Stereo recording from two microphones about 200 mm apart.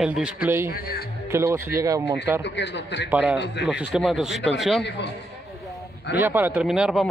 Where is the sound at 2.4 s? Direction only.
60° left (ahead or behind).